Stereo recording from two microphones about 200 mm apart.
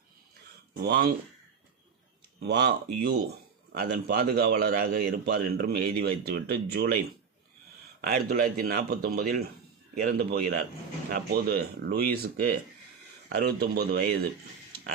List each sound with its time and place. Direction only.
0.7 s speech: 55° right (ahead or behind)
2.4 s speech: 60° right (ahead or behind)
8.0 s speech: 50° right (ahead or behind)